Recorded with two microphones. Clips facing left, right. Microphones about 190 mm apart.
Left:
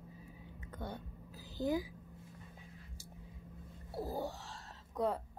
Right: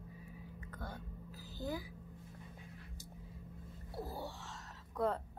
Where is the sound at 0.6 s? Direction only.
20° left (ahead or behind).